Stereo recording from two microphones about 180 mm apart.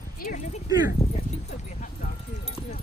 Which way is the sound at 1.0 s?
35° left (ahead or behind).